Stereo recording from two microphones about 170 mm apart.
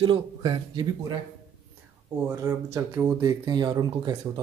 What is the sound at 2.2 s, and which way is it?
Speech, 15° right (ahead or behind).